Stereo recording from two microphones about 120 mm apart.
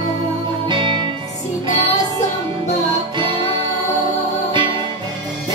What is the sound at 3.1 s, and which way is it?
Music, 40° right (ahead or behind).